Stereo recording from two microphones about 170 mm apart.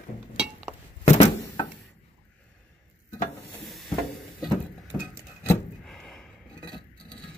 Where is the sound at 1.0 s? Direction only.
40° left (ahead or behind).